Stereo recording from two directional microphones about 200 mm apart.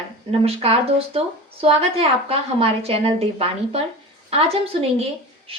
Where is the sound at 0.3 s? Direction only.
30° right (ahead or behind).